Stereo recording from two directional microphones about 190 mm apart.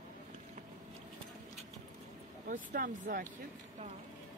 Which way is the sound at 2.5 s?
45° right (ahead or behind).